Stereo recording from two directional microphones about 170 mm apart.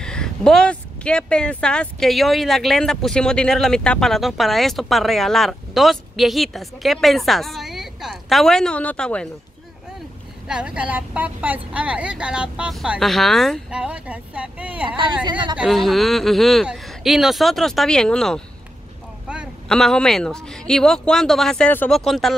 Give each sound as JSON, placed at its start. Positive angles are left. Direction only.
{"t": 0.0, "sound": "speech", "side_deg": 5}
{"t": 10.5, "sound": "a woman's voice", "side_deg": -5}
{"t": 14.9, "sound": "speech", "side_deg": -30}
{"t": 15.5, "sound": "speech", "side_deg": -5}